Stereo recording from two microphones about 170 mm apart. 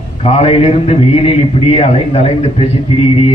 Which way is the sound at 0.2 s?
35° left (ahead or behind).